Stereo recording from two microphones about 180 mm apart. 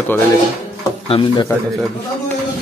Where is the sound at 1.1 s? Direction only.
25° left (ahead or behind).